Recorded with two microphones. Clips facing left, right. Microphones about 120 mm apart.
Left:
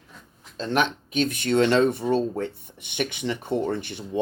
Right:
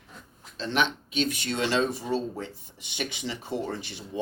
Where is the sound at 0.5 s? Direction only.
45° left (ahead or behind).